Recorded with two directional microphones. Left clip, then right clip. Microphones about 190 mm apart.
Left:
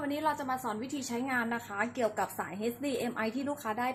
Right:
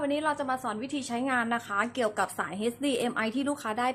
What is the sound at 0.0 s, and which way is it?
A woman's voice, 20° right (ahead or behind).